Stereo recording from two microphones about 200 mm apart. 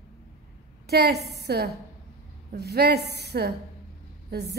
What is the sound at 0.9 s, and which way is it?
A woman's voice, 55° right (ahead or behind).